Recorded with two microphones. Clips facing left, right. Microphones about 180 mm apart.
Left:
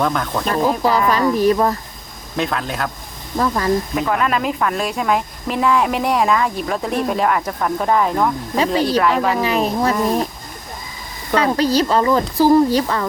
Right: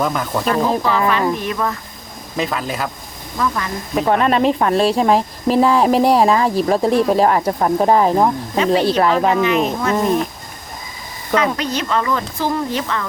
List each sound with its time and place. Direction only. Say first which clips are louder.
0.0 s speech: even; 5° right (ahead or behind)
0.4 s speech: even; 40° left (ahead or behind)
2.3 s speech: even; centre (ahead or behind)
3.3 s speech: left 2 dB; 35° left (ahead or behind)
4.0 s speech: right 4 dB; 30° right (ahead or behind)
9.4 s speech: right 1 dB; 35° left (ahead or behind)
11.3 s speech: left 3 dB; 35° left (ahead or behind)